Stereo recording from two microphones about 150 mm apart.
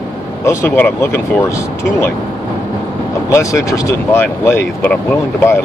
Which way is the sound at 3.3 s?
20° left (ahead or behind).